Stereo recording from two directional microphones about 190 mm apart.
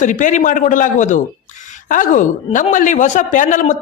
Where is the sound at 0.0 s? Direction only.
40° left (ahead or behind).